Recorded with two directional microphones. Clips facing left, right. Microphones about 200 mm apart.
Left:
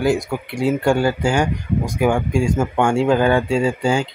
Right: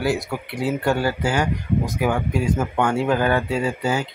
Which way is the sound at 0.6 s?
25° left (ahead or behind).